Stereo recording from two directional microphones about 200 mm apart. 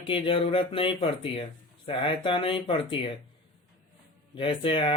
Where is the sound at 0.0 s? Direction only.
25° left (ahead or behind).